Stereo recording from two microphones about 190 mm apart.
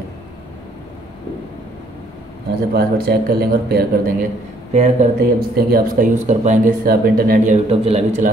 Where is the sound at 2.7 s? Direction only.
55° right (ahead or behind).